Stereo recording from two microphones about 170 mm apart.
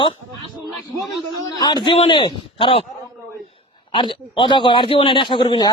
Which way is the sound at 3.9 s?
30° left (ahead or behind).